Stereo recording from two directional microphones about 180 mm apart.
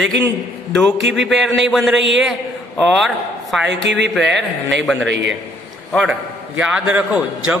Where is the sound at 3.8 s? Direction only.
75° right (ahead or behind).